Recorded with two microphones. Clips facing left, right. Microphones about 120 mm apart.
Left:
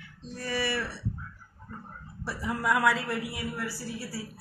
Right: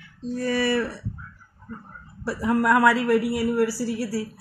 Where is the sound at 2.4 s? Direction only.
80° right.